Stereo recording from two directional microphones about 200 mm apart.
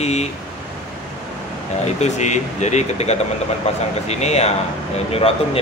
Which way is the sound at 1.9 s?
35° left (ahead or behind).